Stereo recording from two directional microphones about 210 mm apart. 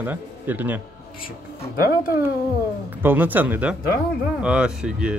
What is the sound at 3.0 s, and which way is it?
A man's voice, 10° right (ahead or behind).